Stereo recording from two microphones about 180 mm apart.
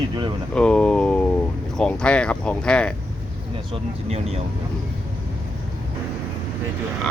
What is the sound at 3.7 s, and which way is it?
Speech, 35° right (ahead or behind).